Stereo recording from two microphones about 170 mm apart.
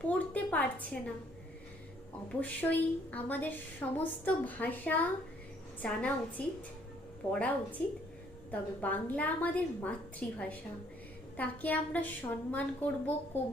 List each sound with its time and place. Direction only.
0.3 s a woman's voice: 10° left (ahead or behind)
2.4 s a woman's voice: 10° left (ahead or behind)